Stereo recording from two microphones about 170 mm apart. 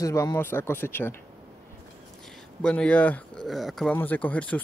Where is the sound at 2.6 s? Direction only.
5° left (ahead or behind).